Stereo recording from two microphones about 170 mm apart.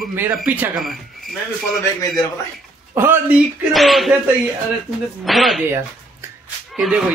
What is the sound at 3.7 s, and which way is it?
Speech, centre (ahead or behind).